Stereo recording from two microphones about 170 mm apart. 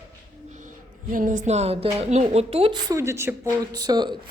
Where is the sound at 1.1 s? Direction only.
50° right (ahead or behind); by 2.8 s 35° right (ahead or behind).